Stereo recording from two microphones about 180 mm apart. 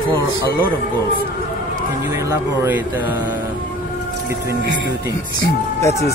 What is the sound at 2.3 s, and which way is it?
Speech, 15° right (ahead or behind).